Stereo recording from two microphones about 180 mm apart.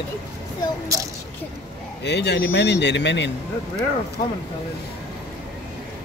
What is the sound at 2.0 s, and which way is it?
Speech, 70° left (ahead or behind).